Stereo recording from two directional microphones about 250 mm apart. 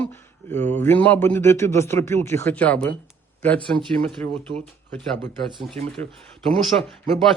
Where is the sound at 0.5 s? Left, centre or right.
Centre.